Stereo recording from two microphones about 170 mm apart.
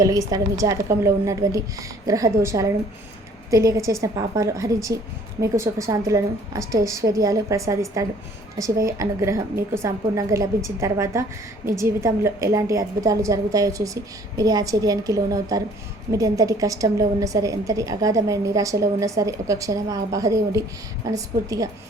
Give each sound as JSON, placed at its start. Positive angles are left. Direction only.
{"t": 0.0, "sound": "a woman's voice", "side_deg": -20}